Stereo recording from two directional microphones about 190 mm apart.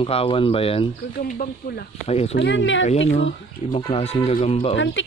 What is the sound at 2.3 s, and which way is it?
Speech, 70° left (ahead or behind).